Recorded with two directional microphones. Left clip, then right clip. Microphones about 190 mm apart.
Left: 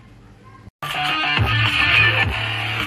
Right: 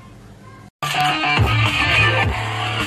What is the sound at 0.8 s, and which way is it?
Music, 10° right (ahead or behind).